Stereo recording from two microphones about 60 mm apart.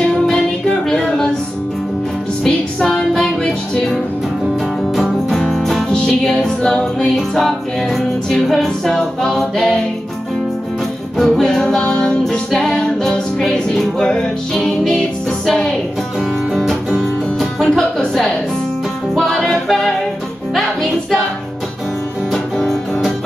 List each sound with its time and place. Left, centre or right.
0.8 s music: centre
2.4 s music: centre
4.9 s music: centre
11.1 s music: centre
11.8 s music: centre
12.3 s music: centre
17.0 s music: centre
22.3 s music: centre